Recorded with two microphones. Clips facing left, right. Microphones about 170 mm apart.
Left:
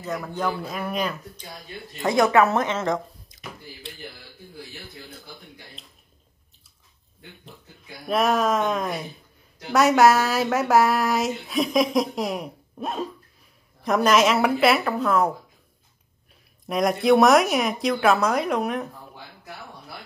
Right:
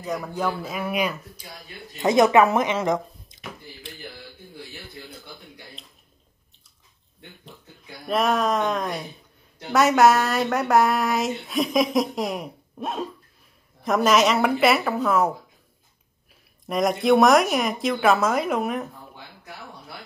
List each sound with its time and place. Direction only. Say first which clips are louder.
0.3 s speech: even; 5° right (ahead or behind)
2.0 s speech: right 2 dB; 20° right (ahead or behind)
3.3 s a sound: right 1 dB; centre (ahead or behind)
4.6 s speech: even; centre (ahead or behind)
7.2 s speech: even; centre (ahead or behind)
16.6 s a woman's voice: even; centre (ahead or behind)